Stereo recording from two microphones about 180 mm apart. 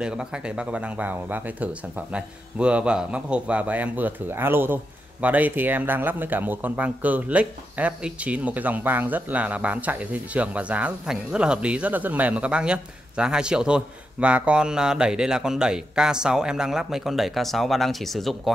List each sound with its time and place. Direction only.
0.0 s speech: 5° right (ahead or behind)